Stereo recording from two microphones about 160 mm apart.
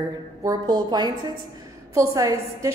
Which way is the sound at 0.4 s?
25° right (ahead or behind).